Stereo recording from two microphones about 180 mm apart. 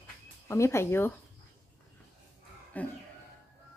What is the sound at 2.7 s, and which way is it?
Speech, 10° left (ahead or behind).